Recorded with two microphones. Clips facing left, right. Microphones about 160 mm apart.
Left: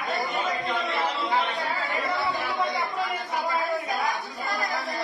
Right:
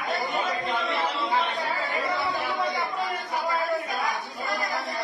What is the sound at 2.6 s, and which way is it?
Chatter, 20° right (ahead or behind).